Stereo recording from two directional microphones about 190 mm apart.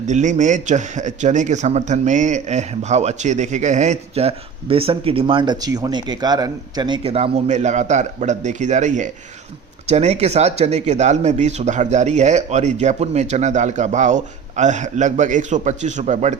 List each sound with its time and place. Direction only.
0.0 s a man's voice: 40° right (ahead or behind)